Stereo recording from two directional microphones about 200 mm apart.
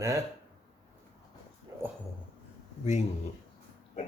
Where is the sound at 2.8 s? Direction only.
35° left (ahead or behind).